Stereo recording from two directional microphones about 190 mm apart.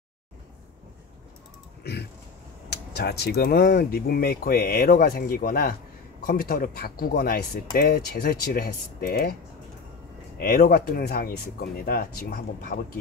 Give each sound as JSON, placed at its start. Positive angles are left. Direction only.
{"t": 1.8, "sound": "a sound", "side_deg": 60}
{"t": 2.7, "sound": "speech", "side_deg": 60}
{"t": 10.3, "sound": "speech", "side_deg": 55}